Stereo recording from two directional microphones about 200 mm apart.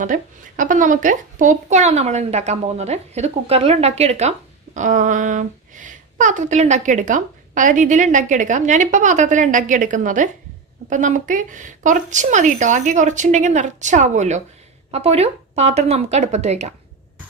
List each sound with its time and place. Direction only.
0.0 s speech: 40° right (ahead or behind)